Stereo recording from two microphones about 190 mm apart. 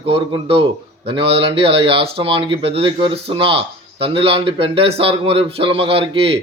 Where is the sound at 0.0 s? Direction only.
30° right (ahead or behind).